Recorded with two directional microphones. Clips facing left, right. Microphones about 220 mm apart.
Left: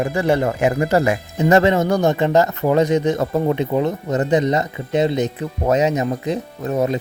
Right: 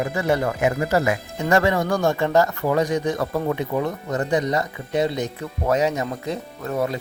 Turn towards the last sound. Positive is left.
turn(degrees=20)  # may be behind; listen again after turning